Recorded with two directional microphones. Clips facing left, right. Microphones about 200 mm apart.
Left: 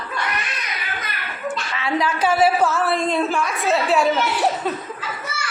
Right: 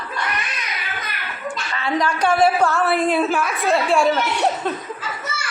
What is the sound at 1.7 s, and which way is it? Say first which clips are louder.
A woman's voice: right 2 dB; 5° left (ahead or behind).